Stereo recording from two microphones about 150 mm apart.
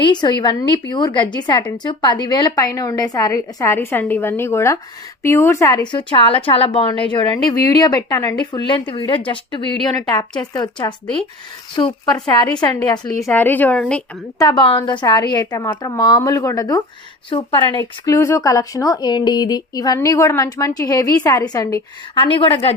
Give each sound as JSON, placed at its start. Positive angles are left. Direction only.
{"t": 0.0, "sound": "a woman's voice", "side_deg": 30}
{"t": 5.9, "sound": "a woman's voice", "side_deg": 35}
{"t": 13.2, "sound": "a woman's voice", "side_deg": 15}
{"t": 14.3, "sound": "a woman's voice", "side_deg": 30}
{"t": 18.0, "sound": "a woman's voice", "side_deg": 20}
{"t": 22.2, "sound": "a woman's voice", "side_deg": 35}